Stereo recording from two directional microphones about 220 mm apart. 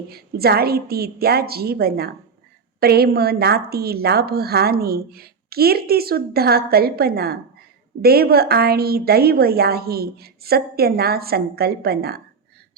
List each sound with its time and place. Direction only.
0.1 s a woman's voice: 45° right (ahead or behind)